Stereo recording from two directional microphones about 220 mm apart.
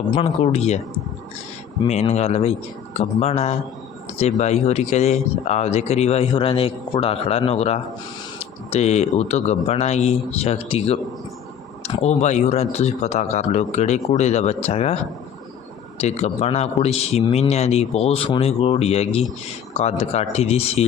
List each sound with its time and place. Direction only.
0.1 s speech: 25° left (ahead or behind)
1.8 s speech: 25° left (ahead or behind)
16.0 s speech: 30° left (ahead or behind)